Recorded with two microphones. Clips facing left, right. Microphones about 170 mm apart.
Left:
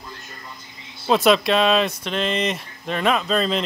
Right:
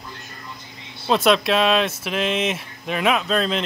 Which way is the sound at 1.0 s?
Centre (ahead or behind).